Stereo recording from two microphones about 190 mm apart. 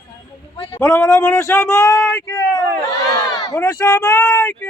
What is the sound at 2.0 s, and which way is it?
Speech, 5° left (ahead or behind).